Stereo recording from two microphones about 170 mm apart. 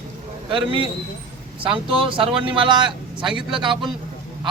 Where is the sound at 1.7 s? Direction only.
30° right (ahead or behind).